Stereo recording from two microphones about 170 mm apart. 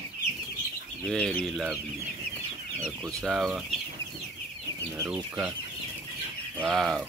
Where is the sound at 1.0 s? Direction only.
5° left (ahead or behind).